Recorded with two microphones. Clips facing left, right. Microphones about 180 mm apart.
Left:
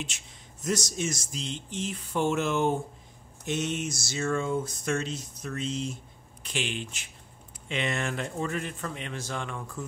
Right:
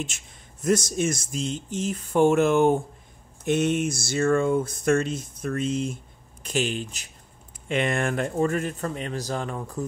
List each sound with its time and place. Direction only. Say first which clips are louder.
0.0 s speech: right 5 dB; 50° right (ahead or behind)
6.4 s speech: right 7 dB; 40° right (ahead or behind)
7.6 s speech: right 6 dB; 50° right (ahead or behind)